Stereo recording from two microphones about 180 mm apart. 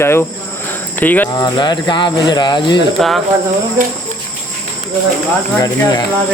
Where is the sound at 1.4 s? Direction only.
25° left (ahead or behind).